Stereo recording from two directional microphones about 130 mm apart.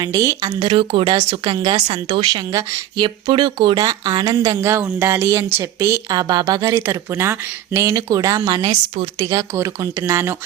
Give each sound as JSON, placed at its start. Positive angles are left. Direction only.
{"t": 0.0, "sound": "speech", "side_deg": -25}
{"t": 0.6, "sound": "speech", "side_deg": -40}
{"t": 1.1, "sound": "speech", "side_deg": -30}